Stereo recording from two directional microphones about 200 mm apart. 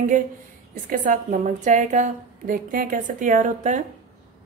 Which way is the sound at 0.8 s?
45° right (ahead or behind).